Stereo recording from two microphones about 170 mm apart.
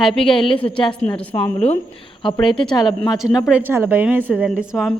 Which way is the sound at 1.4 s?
40° left (ahead or behind).